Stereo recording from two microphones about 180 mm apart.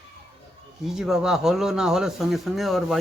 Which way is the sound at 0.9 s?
Centre (ahead or behind).